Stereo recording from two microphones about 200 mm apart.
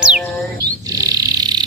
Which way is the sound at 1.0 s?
20° right (ahead or behind).